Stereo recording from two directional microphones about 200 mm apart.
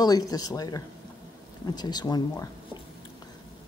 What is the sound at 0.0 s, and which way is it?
Speech, 20° left (ahead or behind).